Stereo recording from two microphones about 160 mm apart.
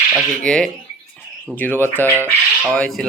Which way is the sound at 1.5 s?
10° left (ahead or behind).